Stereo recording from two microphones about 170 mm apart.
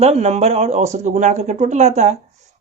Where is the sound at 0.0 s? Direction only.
40° right (ahead or behind).